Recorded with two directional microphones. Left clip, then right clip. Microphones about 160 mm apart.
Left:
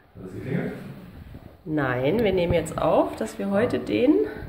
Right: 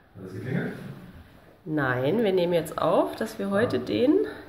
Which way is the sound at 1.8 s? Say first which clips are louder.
Left 2 dB; 10° left (ahead or behind).